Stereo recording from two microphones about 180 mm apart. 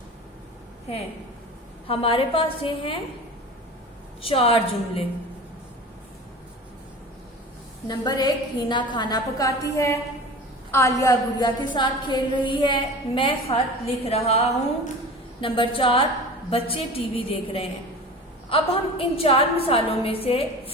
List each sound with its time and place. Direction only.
1.9 s a woman's voice: 30° left (ahead or behind)
4.2 s a woman's voice: 30° left (ahead or behind)
7.9 s a woman's voice: 25° left (ahead or behind)